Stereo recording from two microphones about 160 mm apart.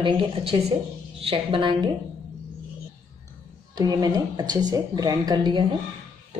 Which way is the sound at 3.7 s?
20° right (ahead or behind).